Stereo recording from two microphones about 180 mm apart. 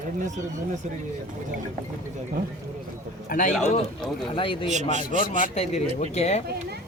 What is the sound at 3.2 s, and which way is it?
Speech, 45° left (ahead or behind).